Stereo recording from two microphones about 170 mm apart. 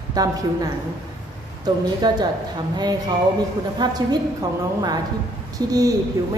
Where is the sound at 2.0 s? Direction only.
25° right (ahead or behind).